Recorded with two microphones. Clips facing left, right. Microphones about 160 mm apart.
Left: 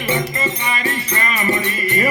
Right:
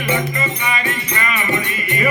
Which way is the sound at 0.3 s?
35° left (ahead or behind).